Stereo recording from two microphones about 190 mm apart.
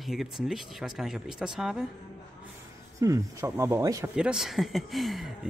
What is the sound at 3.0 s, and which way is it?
Speech, 15° right (ahead or behind).